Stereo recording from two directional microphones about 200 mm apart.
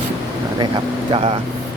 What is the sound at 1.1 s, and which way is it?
Speech, 25° right (ahead or behind).